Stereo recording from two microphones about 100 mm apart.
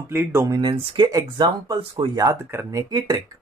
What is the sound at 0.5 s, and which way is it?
Speech, 50° right (ahead or behind).